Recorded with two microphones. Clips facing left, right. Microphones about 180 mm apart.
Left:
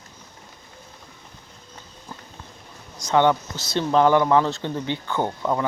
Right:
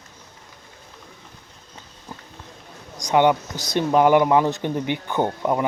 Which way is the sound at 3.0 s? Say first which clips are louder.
Right 1 dB; 15° right (ahead or behind).